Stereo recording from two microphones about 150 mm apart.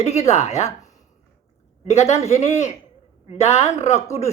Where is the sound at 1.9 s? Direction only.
45° left (ahead or behind).